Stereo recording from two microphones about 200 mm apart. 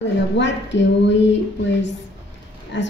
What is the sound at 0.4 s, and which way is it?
A woman's voice, 65° left (ahead or behind).